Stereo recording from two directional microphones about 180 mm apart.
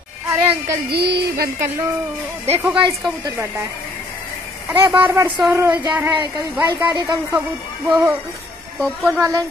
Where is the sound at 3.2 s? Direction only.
15° right (ahead or behind).